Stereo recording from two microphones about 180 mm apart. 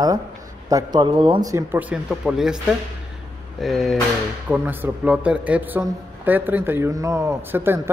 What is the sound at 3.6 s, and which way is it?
A man's voice, centre (ahead or behind).